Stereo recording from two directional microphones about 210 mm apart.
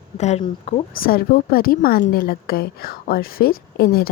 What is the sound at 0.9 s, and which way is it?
A woman's voice, 45° left (ahead or behind).